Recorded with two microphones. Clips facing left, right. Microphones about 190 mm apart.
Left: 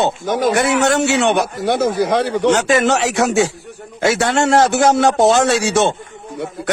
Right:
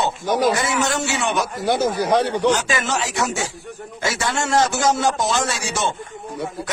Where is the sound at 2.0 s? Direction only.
80° left.